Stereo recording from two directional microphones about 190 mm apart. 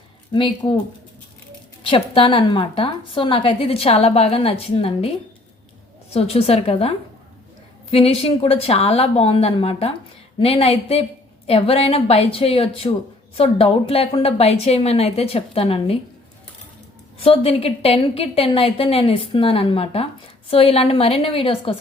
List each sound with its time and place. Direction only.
0.3 s a woman's voice: 25° left (ahead or behind)
1.8 s a woman's voice: 25° left (ahead or behind)
6.1 s a woman's voice: 30° left (ahead or behind)
17.2 s a woman's voice: 30° left (ahead or behind)